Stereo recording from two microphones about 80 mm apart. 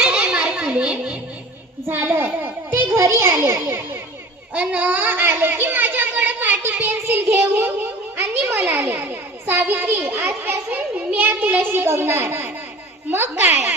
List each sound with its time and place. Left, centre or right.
0.0 s a sound: centre
1.9 s a child's voice: right
4.5 s a child's voice: centre